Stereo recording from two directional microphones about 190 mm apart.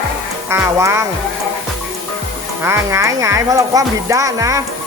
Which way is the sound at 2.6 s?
15° right (ahead or behind).